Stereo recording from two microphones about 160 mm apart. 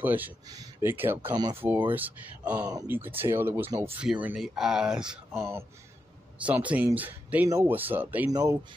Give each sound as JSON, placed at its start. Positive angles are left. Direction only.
{"t": 0.0, "sound": "speech", "side_deg": -10}
{"t": 2.6, "sound": "speech", "side_deg": -25}
{"t": 2.9, "sound": "speech", "side_deg": -10}
{"t": 5.3, "sound": "speech", "side_deg": -15}
{"t": 8.3, "sound": "speech", "side_deg": -25}